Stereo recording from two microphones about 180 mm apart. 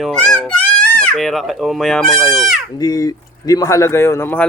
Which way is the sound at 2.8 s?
20° left (ahead or behind).